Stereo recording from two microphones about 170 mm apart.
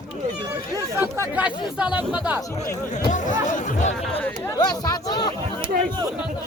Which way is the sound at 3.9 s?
5° left (ahead or behind).